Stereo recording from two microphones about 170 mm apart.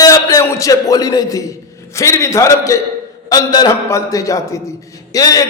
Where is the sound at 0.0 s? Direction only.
20° left (ahead or behind).